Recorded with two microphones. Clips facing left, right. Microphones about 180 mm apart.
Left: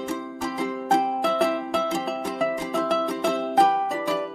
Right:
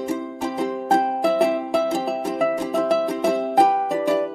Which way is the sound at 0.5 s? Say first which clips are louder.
Right 4 dB; 40° right (ahead or behind).